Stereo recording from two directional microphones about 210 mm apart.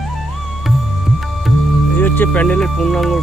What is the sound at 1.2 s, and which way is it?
Music, centre (ahead or behind).